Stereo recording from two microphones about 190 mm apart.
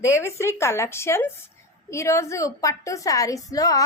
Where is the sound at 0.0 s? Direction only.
15° left (ahead or behind).